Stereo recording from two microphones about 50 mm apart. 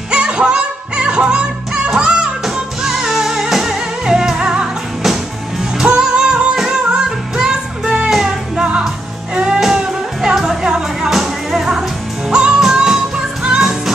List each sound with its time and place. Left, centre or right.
0.1 s music: right
6.5 s music: centre